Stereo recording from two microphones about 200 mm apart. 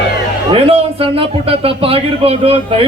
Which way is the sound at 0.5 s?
30° right (ahead or behind).